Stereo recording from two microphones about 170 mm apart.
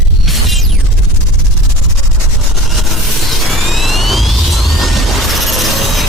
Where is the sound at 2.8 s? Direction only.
Centre (ahead or behind).